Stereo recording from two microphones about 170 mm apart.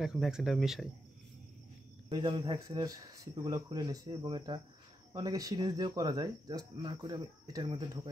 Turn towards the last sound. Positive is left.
turn(degrees=-25)  # may be behind; listen again after turning